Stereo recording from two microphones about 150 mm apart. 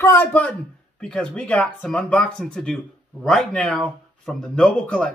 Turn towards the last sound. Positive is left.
turn(degrees=10)  # may be behind; listen again after turning